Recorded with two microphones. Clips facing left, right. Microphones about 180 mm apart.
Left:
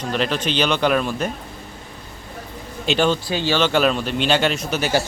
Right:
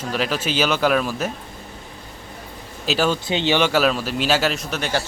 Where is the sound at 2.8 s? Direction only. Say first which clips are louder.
Left 2 dB; 5° right (ahead or behind).